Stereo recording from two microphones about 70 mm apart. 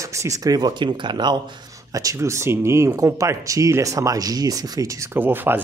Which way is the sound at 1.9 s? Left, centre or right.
Right.